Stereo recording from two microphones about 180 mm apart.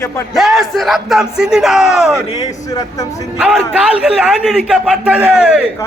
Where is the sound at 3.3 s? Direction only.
5° right (ahead or behind).